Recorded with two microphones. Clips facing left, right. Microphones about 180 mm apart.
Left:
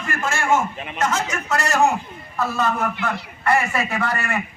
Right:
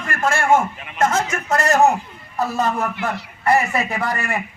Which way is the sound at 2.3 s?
35° right (ahead or behind).